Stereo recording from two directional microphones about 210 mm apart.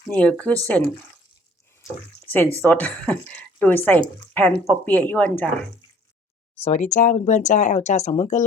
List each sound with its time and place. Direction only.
0.1 s speech: 5° left (ahead or behind)
6.6 s speech: 35° left (ahead or behind)